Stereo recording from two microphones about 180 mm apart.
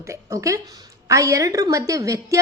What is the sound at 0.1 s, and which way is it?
A woman's voice, 15° right (ahead or behind).